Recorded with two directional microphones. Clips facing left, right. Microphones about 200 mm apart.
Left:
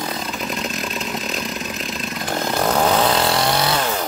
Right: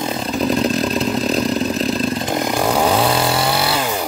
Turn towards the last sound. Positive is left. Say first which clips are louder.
# right 1 dB
turn(degrees=-5)  # may be behind; listen again after turning